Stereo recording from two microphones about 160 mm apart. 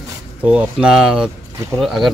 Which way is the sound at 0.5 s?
5° right (ahead or behind).